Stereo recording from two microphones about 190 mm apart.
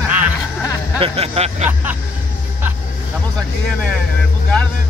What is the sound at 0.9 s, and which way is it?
Speech, 30° right (ahead or behind).